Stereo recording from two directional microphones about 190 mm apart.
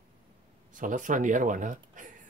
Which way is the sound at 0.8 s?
45° right (ahead or behind).